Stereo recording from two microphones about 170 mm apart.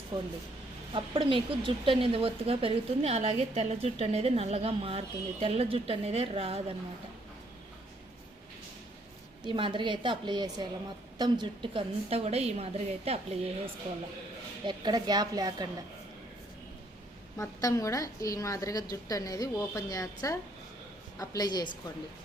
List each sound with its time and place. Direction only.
0.1 s a woman's voice: 25° right (ahead or behind)
9.4 s a woman's voice: 30° right (ahead or behind)
14.6 s a woman's voice: 25° right (ahead or behind)
17.3 s a woman's voice: 20° left (ahead or behind)